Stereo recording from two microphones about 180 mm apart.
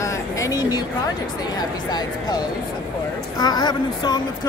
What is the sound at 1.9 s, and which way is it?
Speech, 20° left (ahead or behind).